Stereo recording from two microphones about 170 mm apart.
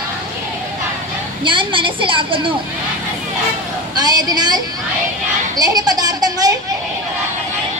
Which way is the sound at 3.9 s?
25° right (ahead or behind).